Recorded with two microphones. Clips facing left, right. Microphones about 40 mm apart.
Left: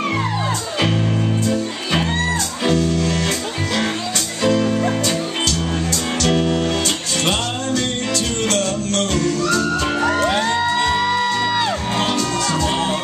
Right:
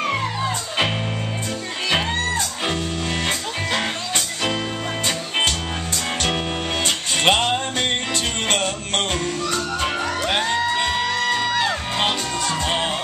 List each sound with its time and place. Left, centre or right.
4.4 s music: right
7.2 s music: right; by 10.9 s centre
11.1 s music: centre